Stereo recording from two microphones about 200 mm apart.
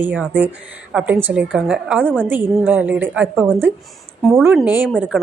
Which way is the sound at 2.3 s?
10° right (ahead or behind).